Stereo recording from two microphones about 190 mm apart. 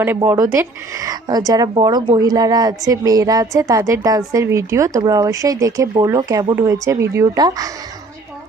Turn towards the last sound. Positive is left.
turn(degrees=-20)  # may be behind; listen again after turning